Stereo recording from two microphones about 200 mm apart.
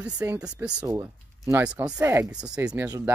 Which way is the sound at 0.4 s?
5° right (ahead or behind).